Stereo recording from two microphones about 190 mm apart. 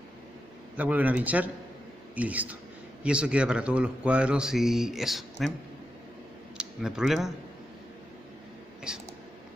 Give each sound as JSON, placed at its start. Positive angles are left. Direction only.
{"t": 0.7, "sound": "a man's voice", "side_deg": -10}
{"t": 6.5, "sound": "speech", "side_deg": -5}
{"t": 8.9, "sound": "speech", "side_deg": -5}